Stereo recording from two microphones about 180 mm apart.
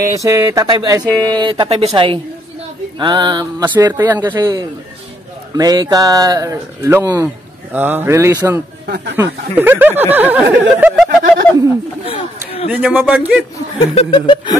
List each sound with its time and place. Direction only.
0.0 s speech: 20° right (ahead or behind)
3.6 s speech: 10° right (ahead or behind)
4.4 s speech: 20° right (ahead or behind)
8.8 s speech: 65° right (ahead or behind)
9.1 s speech: 10° right (ahead or behind)
12.0 s speech: 30° left (ahead or behind)
12.7 s speech: 10° right (ahead or behind)
13.9 s speech: 25° left (ahead or behind)